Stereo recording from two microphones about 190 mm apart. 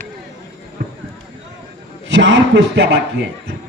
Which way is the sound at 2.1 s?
75° right (ahead or behind).